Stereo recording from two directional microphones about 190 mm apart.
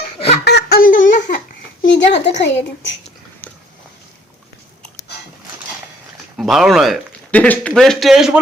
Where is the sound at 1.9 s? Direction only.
65° left (ahead or behind).